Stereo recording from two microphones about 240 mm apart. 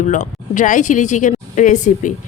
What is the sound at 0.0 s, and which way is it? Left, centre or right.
Speech, left.